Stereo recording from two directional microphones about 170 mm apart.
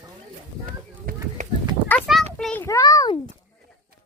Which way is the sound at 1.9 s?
5° left (ahead or behind).